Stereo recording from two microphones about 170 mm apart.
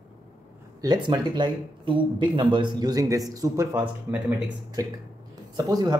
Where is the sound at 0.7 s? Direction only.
25° right (ahead or behind).